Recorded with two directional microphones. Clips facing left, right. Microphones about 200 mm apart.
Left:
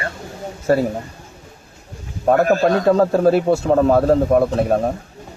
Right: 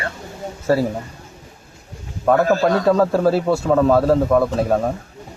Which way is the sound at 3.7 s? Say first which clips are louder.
Even; 40° left (ahead or behind).